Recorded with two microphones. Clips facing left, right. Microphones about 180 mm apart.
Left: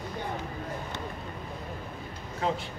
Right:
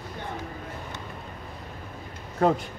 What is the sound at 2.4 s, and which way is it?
Speech, 50° right (ahead or behind).